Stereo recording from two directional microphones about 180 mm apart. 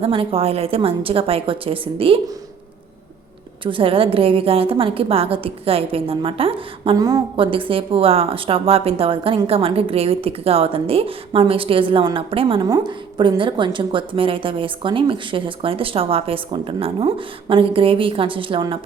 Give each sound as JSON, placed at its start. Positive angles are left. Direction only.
{"t": 0.0, "sound": "a woman's voice", "side_deg": -30}
{"t": 3.6, "sound": "a woman's voice", "side_deg": -30}
{"t": 6.9, "sound": "speech", "side_deg": -20}